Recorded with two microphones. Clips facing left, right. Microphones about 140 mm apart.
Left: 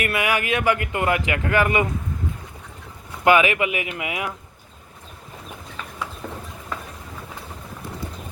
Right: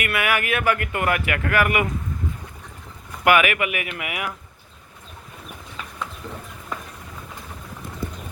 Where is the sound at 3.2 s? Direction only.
25° left (ahead or behind).